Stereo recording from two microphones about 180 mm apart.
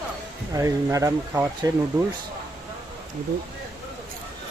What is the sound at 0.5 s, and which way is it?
Speech, 15° right (ahead or behind).